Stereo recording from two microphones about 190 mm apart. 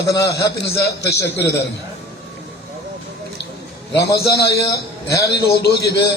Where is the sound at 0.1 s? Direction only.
60° left (ahead or behind).